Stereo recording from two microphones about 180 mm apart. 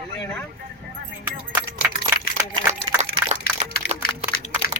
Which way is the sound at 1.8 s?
5° right (ahead or behind).